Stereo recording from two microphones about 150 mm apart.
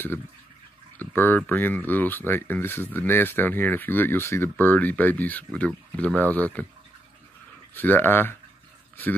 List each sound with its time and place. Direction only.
0.9 s speech: 15° left (ahead or behind)
7.7 s speech: 15° left (ahead or behind)